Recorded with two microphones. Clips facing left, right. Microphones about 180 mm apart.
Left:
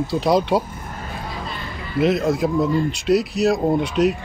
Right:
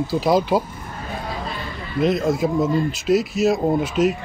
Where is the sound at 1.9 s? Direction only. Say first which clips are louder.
Left 1 dB; centre (ahead or behind).